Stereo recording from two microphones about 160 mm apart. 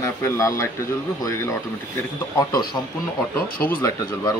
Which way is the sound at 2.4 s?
25° left (ahead or behind).